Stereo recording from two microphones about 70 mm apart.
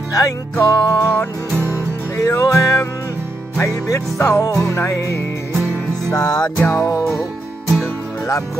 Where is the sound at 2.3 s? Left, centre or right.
Left.